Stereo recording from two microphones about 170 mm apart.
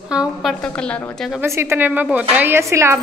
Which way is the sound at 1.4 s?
15° right (ahead or behind).